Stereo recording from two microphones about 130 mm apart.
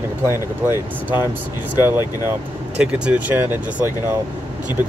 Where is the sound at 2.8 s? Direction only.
10° right (ahead or behind).